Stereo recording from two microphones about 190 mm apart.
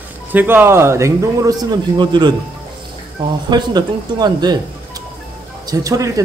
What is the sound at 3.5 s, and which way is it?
Speech, 20° right (ahead or behind).